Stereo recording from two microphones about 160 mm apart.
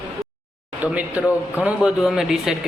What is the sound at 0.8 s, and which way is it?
A man's voice, 10° right (ahead or behind).